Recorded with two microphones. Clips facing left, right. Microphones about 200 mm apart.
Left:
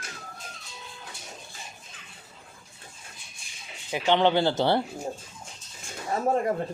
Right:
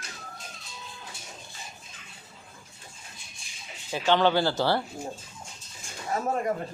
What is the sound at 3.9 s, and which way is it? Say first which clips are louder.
Speech: left 1 dB; 20° left (ahead or behind).